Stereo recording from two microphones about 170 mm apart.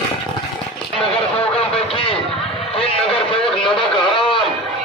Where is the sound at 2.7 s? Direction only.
35° left (ahead or behind).